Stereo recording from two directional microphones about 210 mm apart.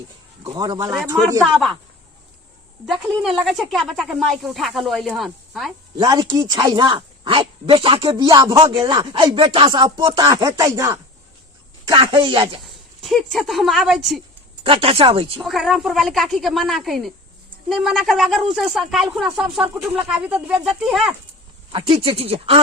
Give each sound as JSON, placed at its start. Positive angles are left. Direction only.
{"t": 0.4, "sound": "a man's voice", "side_deg": -20}
{"t": 1.4, "sound": "speech", "side_deg": 0}
{"t": 2.8, "sound": "speech", "side_deg": 0}
{"t": 6.0, "sound": "speech", "side_deg": -15}
{"t": 12.6, "sound": "speech", "side_deg": 0}
{"t": 14.6, "sound": "speech", "side_deg": -25}
{"t": 15.4, "sound": "speech", "side_deg": 0}
{"t": 21.7, "sound": "speech", "side_deg": -25}